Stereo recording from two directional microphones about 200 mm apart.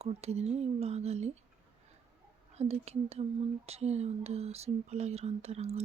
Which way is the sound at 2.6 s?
30° right (ahead or behind).